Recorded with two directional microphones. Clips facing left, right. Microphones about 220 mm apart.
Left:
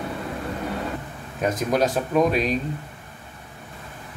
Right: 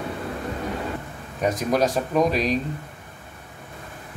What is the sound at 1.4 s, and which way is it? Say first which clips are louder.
Speech: even; centre (ahead or behind).